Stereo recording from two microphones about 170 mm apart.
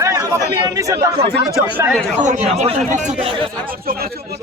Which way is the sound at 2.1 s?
45° right (ahead or behind).